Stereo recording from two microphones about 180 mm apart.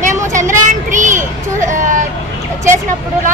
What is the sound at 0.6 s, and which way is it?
A woman's voice, 45° right (ahead or behind).